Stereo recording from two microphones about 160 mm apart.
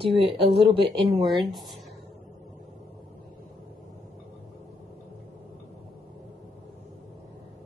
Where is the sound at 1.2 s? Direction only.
Centre (ahead or behind).